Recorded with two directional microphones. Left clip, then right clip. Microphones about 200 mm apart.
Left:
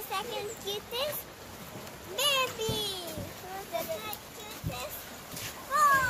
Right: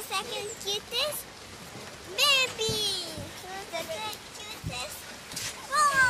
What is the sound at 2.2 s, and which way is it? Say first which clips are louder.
Child singing: right 4 dB; 10° right (ahead or behind).